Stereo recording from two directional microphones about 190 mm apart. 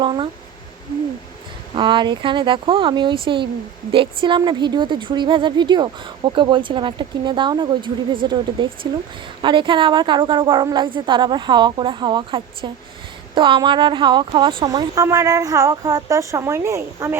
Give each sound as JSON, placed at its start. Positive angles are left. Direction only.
{"t": 0.0, "sound": "speech", "side_deg": -25}
{"t": 1.7, "sound": "a woman's voice", "side_deg": -25}